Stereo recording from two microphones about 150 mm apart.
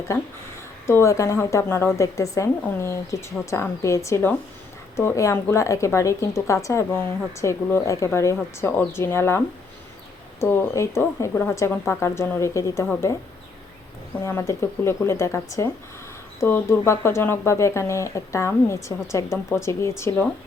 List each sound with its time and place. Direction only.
0.9 s speech: 20° left (ahead or behind)
10.4 s speech: 15° left (ahead or behind)
14.3 s speech: 20° left (ahead or behind)